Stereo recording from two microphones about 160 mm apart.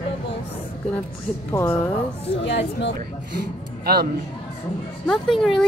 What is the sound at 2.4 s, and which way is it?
Speech, 90° left.